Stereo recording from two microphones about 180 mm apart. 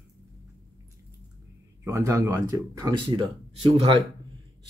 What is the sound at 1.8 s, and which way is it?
Speech, 15° right (ahead or behind).